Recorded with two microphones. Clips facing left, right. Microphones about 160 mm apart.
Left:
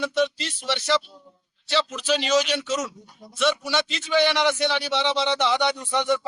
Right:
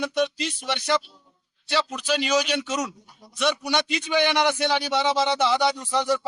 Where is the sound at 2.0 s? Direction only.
10° right (ahead or behind).